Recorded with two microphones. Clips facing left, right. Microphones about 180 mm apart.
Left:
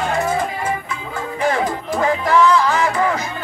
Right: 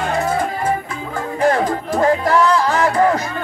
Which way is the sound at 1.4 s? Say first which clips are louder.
Right 3 dB; 40° right (ahead or behind).